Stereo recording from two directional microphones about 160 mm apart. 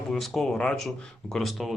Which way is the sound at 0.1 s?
Centre (ahead or behind).